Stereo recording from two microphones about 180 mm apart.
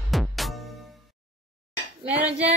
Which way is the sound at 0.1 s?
Centre (ahead or behind).